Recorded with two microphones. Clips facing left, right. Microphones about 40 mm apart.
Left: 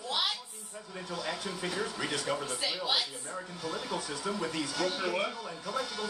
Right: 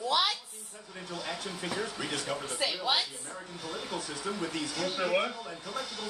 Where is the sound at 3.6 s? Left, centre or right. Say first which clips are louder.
Left 1 dB; centre.